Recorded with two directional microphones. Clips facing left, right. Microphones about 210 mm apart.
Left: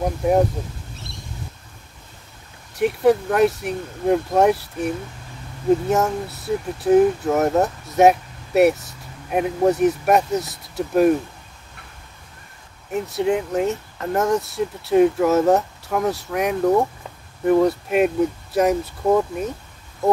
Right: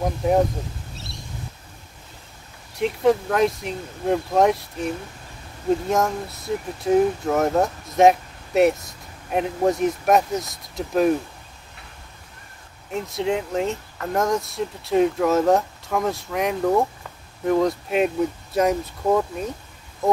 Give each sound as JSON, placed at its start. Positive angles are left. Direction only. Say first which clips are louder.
{"t": 2.8, "sound": "speech", "louder": "left 2 dB", "side_deg": 5}
{"t": 13.2, "sound": "speech", "louder": "left 3 dB", "side_deg": 5}